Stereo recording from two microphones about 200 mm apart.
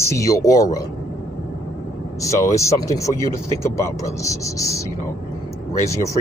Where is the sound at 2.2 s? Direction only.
15° left (ahead or behind).